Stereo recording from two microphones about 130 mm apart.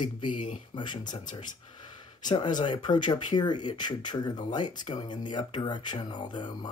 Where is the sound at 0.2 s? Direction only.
40° left (ahead or behind).